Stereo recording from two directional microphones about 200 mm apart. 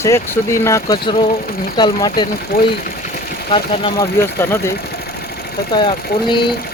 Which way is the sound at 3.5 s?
25° left (ahead or behind).